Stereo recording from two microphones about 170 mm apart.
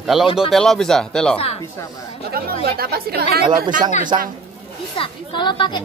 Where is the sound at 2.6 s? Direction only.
65° right (ahead or behind).